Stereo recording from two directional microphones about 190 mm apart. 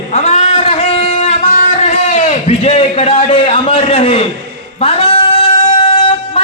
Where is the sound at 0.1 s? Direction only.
35° left (ahead or behind).